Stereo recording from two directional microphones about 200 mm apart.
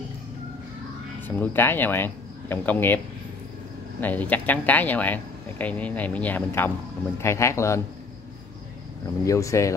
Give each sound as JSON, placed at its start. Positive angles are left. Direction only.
{"t": 1.2, "sound": "speech", "side_deg": 10}
{"t": 4.0, "sound": "speech", "side_deg": 10}
{"t": 9.2, "sound": "speech", "side_deg": 15}